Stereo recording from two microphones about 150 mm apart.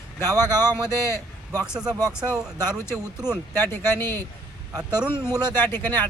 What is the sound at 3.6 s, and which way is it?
Speech, 15° left (ahead or behind).